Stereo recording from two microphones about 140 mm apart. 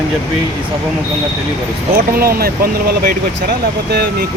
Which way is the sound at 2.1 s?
90° right.